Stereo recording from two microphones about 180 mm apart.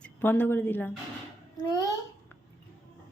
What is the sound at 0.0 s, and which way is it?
Speech, 10° left (ahead or behind).